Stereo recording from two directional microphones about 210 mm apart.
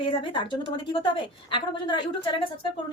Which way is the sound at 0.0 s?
25° left (ahead or behind).